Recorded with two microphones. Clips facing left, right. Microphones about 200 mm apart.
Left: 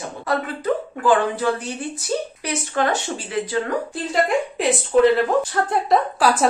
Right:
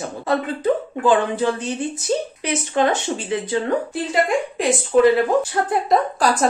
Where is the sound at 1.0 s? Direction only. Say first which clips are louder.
Right 1 dB; 20° right (ahead or behind).